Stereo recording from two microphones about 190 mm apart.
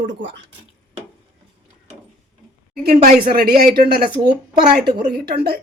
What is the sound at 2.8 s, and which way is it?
A woman's voice, 50° right (ahead or behind).